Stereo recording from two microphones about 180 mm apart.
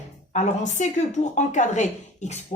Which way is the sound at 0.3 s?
40° left (ahead or behind).